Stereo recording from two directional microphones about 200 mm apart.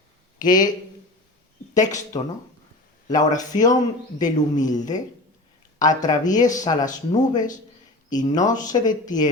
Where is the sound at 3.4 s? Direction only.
20° left (ahead or behind).